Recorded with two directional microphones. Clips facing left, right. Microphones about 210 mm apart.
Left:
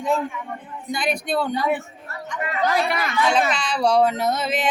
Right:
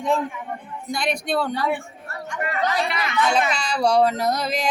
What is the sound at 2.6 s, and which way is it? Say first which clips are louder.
Speech: left 5 dB; 45° left (ahead or behind).